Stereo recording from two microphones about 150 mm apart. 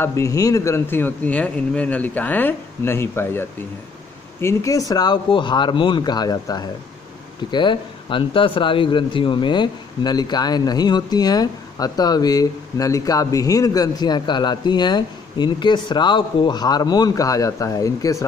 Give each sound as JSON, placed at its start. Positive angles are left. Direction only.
{"t": 0.0, "sound": "a man's voice", "side_deg": 20}